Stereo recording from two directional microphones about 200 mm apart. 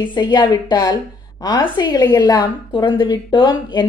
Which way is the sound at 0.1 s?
20° left (ahead or behind).